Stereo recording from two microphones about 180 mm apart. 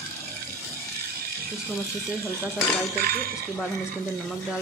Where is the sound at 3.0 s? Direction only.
55° right (ahead or behind).